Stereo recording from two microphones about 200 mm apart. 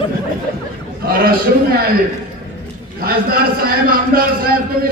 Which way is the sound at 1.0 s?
50° right (ahead or behind).